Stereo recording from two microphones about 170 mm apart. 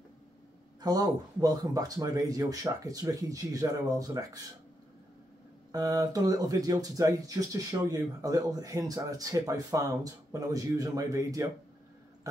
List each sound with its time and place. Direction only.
0.7 s speech: 20° right (ahead or behind)
5.7 s speech: 20° right (ahead or behind)